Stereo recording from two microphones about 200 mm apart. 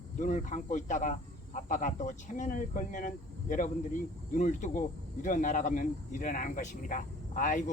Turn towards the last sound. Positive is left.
turn(degrees=40)  # may be behind; listen again after turning